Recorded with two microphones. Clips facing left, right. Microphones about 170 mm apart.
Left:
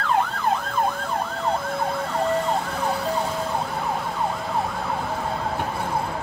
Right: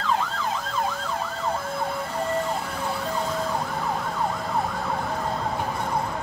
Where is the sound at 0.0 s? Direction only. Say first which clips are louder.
Left 3 dB; 60° left (ahead or behind).